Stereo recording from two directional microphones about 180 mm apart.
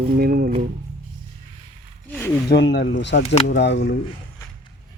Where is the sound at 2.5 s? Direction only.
70° left (ahead or behind).